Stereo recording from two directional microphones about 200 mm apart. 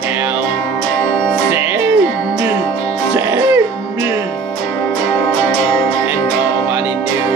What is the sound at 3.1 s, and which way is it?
Music, 10° right (ahead or behind).